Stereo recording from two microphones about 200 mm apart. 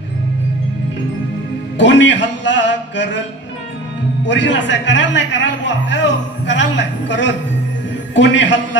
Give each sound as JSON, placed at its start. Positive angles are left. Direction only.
{"t": 1.8, "sound": "speech", "side_deg": 65}
{"t": 4.3, "sound": "a man's voice", "side_deg": 65}